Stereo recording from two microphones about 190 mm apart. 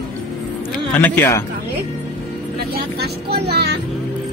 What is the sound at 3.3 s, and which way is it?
Vehicle, 60° right (ahead or behind).